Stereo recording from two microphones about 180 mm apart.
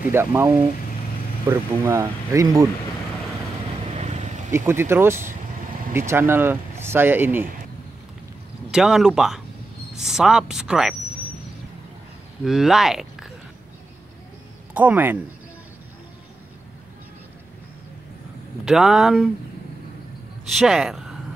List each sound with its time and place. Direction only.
0.1 s speech: 15° right (ahead or behind)
4.0 s vehicle: 40° right (ahead or behind)
4.5 s speech: 15° right (ahead or behind)
8.7 s speech: 5° right (ahead or behind)
12.4 s speech: centre (ahead or behind)
14.7 s speech: 10° right (ahead or behind)
18.7 s speech: centre (ahead or behind)
20.4 s speech: centre (ahead or behind)